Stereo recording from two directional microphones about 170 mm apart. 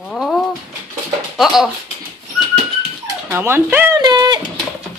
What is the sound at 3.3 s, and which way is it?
Speech, 10° right (ahead or behind).